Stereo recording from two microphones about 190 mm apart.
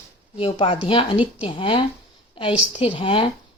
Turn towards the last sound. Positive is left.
turn(degrees=25)  # may be behind; listen again after turning